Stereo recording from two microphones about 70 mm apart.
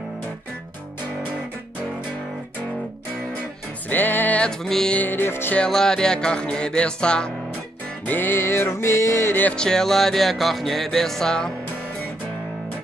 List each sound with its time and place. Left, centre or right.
3.9 s music: left
4.4 s music: centre
4.9 s music: left
5.6 s music: centre
8.1 s music: left
9.6 s music: centre